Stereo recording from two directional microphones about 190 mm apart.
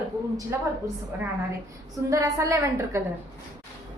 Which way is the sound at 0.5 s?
15° right (ahead or behind).